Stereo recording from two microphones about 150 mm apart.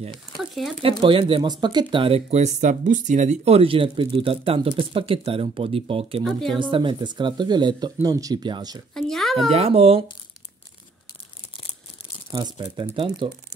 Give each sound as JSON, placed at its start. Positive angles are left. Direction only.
{"t": 0.1, "sound": "speech", "side_deg": 0}
{"t": 0.8, "sound": "speech", "side_deg": -35}
{"t": 2.6, "sound": "speech", "side_deg": -55}
{"t": 6.2, "sound": "speech", "side_deg": 5}
{"t": 6.6, "sound": "speech", "side_deg": -35}
{"t": 8.9, "sound": "speech", "side_deg": 5}
{"t": 9.5, "sound": "speech", "side_deg": -45}
{"t": 12.3, "sound": "speech", "side_deg": -30}